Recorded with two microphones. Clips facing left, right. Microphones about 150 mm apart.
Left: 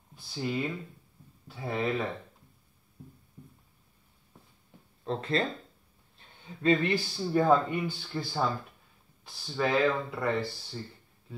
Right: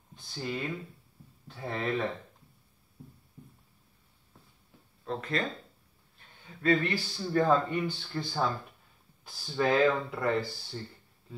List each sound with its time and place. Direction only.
0.1 s speech: 5° left (ahead or behind)
5.0 s speech: 30° left (ahead or behind); by 10.8 s centre (ahead or behind)